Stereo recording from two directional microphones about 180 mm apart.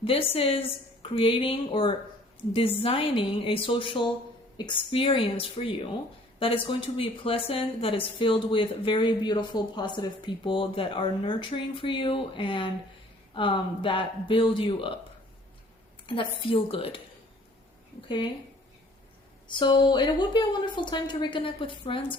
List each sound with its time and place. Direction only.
0.0 s a woman's voice: 30° left (ahead or behind)
16.0 s a woman's voice: 30° left (ahead or behind)
19.5 s a woman's voice: 25° left (ahead or behind)